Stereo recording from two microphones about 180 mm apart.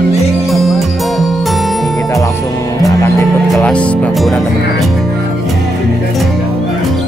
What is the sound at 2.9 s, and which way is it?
Music, 20° left (ahead or behind).